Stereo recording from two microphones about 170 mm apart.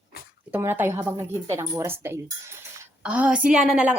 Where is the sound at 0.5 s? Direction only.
10° right (ahead or behind).